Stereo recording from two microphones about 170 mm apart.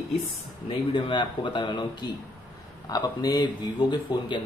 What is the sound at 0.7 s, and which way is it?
Speech, 30° left (ahead or behind).